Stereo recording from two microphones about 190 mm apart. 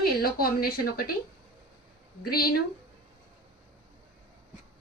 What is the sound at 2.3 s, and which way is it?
Speech, 55° left (ahead or behind).